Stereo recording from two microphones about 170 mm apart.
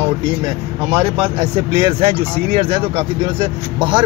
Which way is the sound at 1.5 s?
35° right (ahead or behind).